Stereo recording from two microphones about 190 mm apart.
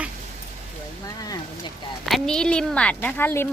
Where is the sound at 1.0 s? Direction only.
20° left (ahead or behind).